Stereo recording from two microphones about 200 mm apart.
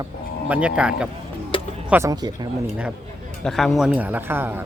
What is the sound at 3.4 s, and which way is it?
A man's voice, centre (ahead or behind).